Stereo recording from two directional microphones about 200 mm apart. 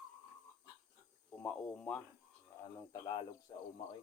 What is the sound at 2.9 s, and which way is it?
Speech, 20° left (ahead or behind).